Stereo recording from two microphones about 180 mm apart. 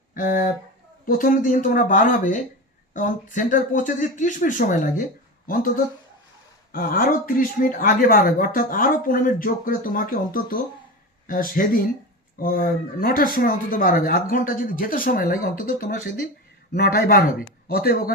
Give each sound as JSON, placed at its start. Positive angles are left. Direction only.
{"t": 0.1, "sound": "speech", "side_deg": 50}